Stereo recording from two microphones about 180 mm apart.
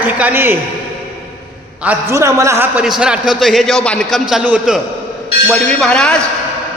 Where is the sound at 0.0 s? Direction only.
10° right (ahead or behind).